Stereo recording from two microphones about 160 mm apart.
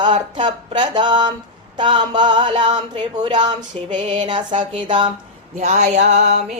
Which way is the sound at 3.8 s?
50° right (ahead or behind).